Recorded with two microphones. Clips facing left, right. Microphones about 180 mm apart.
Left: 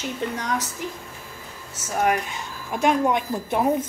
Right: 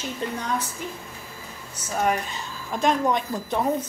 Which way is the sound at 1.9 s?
10° left (ahead or behind).